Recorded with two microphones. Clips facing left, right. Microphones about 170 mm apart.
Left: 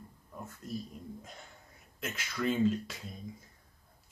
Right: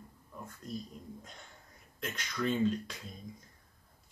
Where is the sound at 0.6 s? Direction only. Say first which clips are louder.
Left 2 dB; 5° left (ahead or behind).